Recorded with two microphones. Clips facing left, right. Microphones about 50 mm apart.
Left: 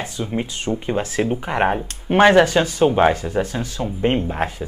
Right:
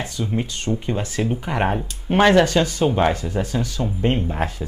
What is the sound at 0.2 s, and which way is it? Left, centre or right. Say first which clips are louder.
Speech: left 1 dB; centre.